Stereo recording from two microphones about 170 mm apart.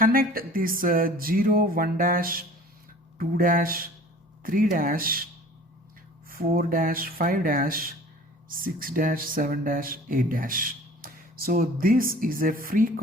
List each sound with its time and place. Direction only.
0.0 s speech: 55° right (ahead or behind)
6.2 s speech: 60° right (ahead or behind)